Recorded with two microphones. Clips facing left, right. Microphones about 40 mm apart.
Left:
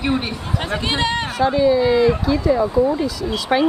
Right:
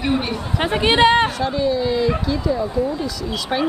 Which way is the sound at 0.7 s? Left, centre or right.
Right.